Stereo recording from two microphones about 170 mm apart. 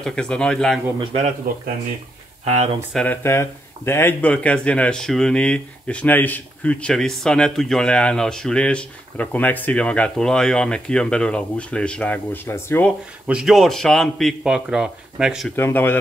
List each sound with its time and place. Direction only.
0.0 s a man's voice: 5° left (ahead or behind)
1.0 s speech: 35° right (ahead or behind)
2.4 s speech: 40° right (ahead or behind)
2.9 s speech: 10° left (ahead or behind)
13.3 s a man's voice: centre (ahead or behind)
15.5 s speech: 10° left (ahead or behind)